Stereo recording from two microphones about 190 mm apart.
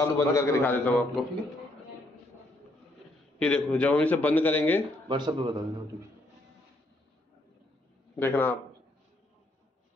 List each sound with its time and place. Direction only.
0.0 s a man's voice: 15° left (ahead or behind)
3.3 s a man's voice: 5° left (ahead or behind)
5.0 s speech: 25° right (ahead or behind)
8.2 s a man's voice: 10° left (ahead or behind)